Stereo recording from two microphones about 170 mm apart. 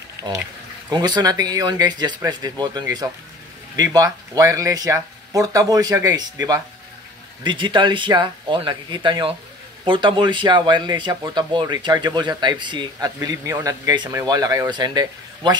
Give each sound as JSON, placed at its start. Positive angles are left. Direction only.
{"t": 0.8, "sound": "speech", "side_deg": -25}
{"t": 7.4, "sound": "speech", "side_deg": -30}